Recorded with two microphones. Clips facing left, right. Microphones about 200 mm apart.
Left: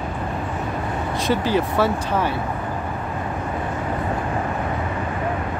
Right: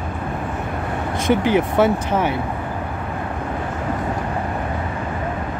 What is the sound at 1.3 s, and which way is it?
Speech, 20° right (ahead or behind).